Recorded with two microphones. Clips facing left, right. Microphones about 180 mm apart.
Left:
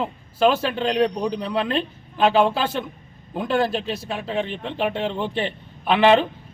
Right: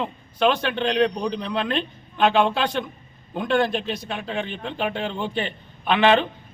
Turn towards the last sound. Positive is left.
turn(degrees=5)  # may be behind; listen again after turning